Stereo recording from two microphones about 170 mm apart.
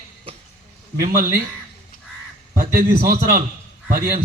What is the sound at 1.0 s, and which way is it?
Speech, 60° right (ahead or behind).